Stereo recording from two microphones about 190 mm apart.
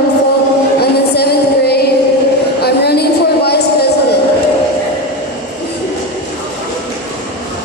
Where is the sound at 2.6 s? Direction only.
55° left (ahead or behind).